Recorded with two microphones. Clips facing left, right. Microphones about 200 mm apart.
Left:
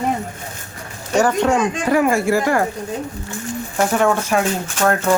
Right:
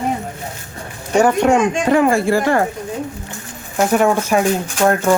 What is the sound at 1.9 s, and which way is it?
Speech, 30° right (ahead or behind).